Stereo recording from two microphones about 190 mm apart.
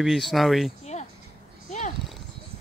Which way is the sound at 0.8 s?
35° left (ahead or behind).